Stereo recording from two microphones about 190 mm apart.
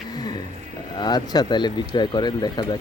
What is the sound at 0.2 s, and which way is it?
Music, 20° left (ahead or behind).